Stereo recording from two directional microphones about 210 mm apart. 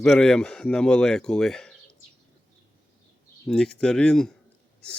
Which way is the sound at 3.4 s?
5° left (ahead or behind).